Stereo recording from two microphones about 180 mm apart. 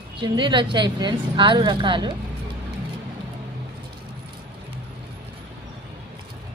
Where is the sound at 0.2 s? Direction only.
25° right (ahead or behind).